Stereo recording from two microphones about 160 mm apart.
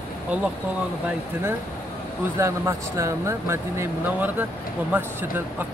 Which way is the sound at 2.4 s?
15° right (ahead or behind).